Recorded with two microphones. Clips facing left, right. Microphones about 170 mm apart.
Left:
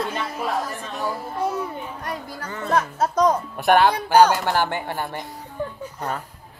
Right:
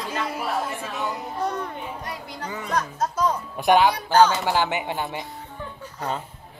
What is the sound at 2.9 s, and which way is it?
Speech, 60° left (ahead or behind).